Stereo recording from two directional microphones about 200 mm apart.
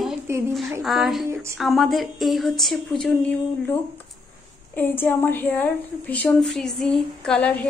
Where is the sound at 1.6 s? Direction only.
Centre (ahead or behind).